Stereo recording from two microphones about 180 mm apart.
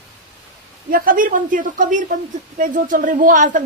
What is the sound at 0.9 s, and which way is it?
A woman's voice, 50° right (ahead or behind).